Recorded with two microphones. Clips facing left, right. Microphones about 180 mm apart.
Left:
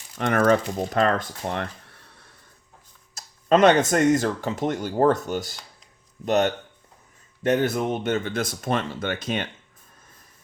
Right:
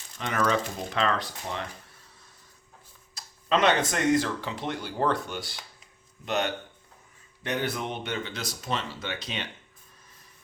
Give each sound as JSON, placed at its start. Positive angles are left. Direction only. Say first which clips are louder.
{"t": 0.2, "sound": "speech", "louder": "left 7 dB", "side_deg": 55}
{"t": 3.2, "sound": "speech", "louder": "left 7 dB", "side_deg": 45}